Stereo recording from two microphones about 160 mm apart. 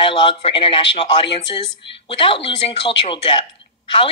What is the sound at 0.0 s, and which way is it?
Speech, 30° left (ahead or behind).